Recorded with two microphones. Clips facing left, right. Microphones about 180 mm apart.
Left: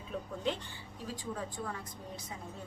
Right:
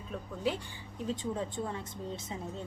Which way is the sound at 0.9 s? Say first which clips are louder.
Right 6 dB; 25° right (ahead or behind).